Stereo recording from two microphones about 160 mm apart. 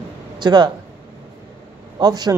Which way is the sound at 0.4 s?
25° right (ahead or behind).